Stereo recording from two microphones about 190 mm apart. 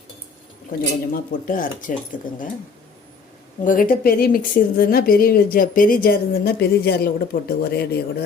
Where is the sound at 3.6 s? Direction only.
50° left (ahead or behind).